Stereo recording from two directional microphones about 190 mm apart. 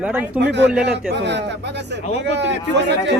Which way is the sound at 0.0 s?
10° right (ahead or behind).